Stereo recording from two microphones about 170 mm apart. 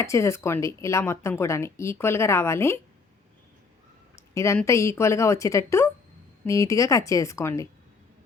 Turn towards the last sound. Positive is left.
turn(degrees=15)  # may be behind; listen again after turning